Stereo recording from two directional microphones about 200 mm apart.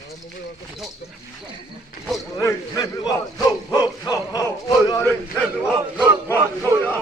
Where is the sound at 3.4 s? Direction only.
20° left (ahead or behind).